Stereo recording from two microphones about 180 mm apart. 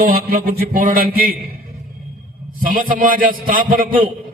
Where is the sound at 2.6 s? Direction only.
50° right (ahead or behind).